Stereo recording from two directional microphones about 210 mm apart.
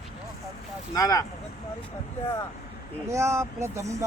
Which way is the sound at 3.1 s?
15° right (ahead or behind).